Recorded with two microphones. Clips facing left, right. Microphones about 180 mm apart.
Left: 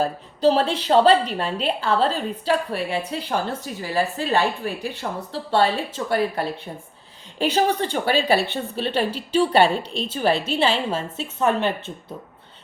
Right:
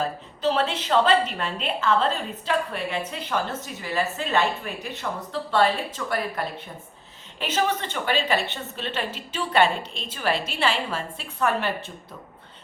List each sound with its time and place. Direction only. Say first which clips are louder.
0.0 s a woman's voice: left 6 dB; 35° left (ahead or behind)